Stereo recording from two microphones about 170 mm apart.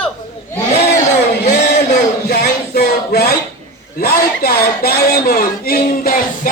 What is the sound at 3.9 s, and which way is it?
Speech, 60° left (ahead or behind).